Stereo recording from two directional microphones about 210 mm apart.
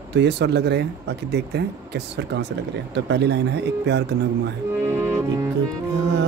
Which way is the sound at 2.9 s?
55° right (ahead or behind).